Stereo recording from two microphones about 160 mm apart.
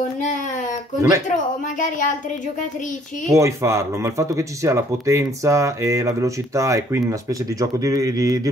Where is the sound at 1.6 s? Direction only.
50° left (ahead or behind).